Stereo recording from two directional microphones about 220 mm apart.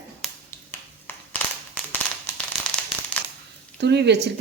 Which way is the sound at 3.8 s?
50° right (ahead or behind).